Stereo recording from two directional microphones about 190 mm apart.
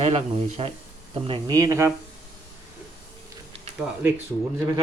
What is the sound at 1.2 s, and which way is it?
Speech, 25° right (ahead or behind).